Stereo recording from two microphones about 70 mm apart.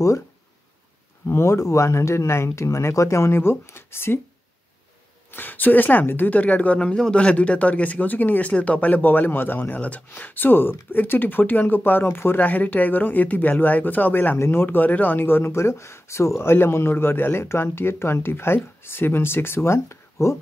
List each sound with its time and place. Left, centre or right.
1.2 s speech: left
5.3 s speech: left